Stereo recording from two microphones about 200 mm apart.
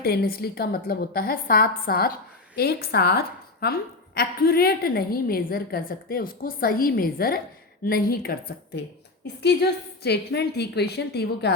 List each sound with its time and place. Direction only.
0.0 s a woman's voice: 50° left (ahead or behind)